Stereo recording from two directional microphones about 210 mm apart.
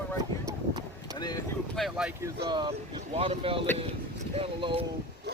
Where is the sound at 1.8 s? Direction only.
Centre (ahead or behind).